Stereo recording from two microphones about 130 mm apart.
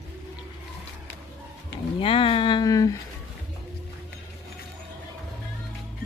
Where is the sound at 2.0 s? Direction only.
45° left (ahead or behind); by 2.9 s 25° left (ahead or behind).